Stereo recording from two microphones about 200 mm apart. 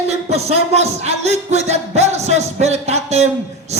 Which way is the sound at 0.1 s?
30° right (ahead or behind).